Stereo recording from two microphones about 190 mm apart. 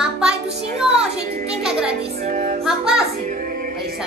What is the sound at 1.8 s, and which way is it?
Speech, 35° right (ahead or behind).